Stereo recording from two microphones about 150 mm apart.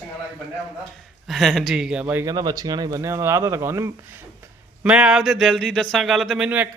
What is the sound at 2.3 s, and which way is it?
Speech, 25° right (ahead or behind).